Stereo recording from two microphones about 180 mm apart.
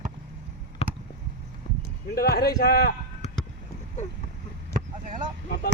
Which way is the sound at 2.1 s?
60° left (ahead or behind).